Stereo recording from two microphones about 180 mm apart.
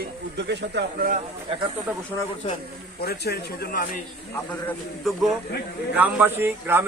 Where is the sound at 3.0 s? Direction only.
65° left (ahead or behind).